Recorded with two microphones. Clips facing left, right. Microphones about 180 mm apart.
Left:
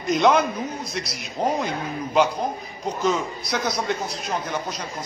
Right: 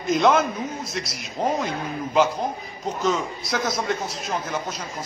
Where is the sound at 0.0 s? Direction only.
Centre (ahead or behind).